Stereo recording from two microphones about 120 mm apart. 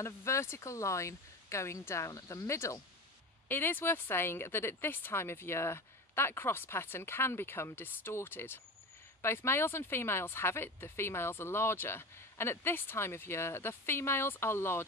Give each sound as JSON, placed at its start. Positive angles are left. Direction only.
{"t": 0.0, "sound": "speech", "side_deg": 25}